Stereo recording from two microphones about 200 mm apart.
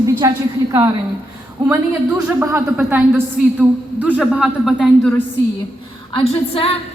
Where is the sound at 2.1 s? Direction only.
15° right (ahead or behind).